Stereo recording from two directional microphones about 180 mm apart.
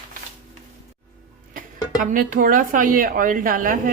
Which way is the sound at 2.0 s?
50° right (ahead or behind).